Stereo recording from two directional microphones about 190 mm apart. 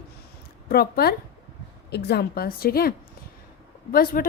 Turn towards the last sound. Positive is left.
turn(degrees=50)  # may be behind; listen again after turning